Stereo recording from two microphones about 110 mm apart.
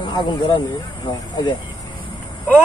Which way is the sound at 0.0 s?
45° left (ahead or behind).